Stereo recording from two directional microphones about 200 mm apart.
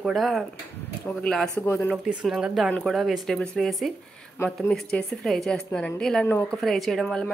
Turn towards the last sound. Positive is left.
turn(degrees=5)  # may be behind; listen again after turning